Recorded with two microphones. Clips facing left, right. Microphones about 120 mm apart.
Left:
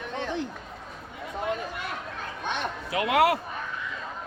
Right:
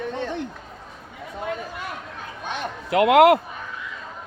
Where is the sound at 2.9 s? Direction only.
65° right (ahead or behind).